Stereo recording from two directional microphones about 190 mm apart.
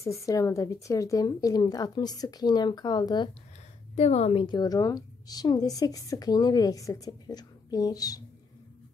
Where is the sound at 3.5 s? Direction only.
35° left (ahead or behind).